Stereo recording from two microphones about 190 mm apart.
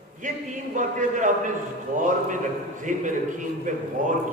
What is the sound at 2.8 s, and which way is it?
A man's voice, 40° right (ahead or behind).